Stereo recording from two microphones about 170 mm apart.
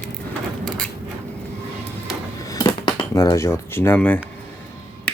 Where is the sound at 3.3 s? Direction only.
15° left (ahead or behind).